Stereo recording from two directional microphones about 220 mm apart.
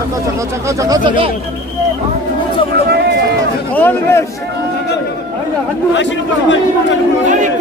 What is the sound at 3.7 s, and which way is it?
Speech, 10° left (ahead or behind).